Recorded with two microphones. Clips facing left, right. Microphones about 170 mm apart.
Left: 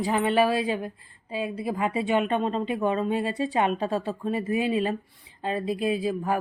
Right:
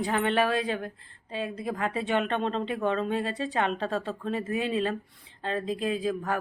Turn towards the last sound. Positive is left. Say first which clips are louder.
# left 3 dB
turn(degrees=10)  # may be behind; listen again after turning